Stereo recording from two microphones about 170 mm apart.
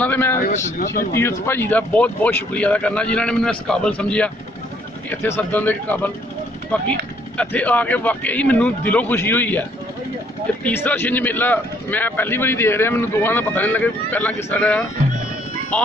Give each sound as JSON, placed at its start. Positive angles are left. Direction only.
{"t": 0.0, "sound": "a sound", "side_deg": 10}
{"t": 0.4, "sound": "speech", "side_deg": 50}
{"t": 1.4, "sound": "speech", "side_deg": 15}